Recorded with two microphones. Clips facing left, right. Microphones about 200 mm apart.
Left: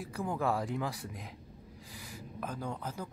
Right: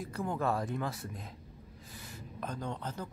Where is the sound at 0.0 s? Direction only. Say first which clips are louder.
Even; 5° left (ahead or behind).